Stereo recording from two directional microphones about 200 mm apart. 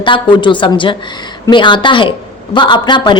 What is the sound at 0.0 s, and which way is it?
A woman's voice, 25° left (ahead or behind).